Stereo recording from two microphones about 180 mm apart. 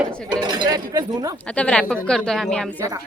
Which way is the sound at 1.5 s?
5° left (ahead or behind).